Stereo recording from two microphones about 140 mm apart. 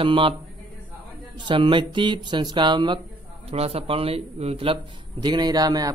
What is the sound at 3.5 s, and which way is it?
Speech, 45° right (ahead or behind).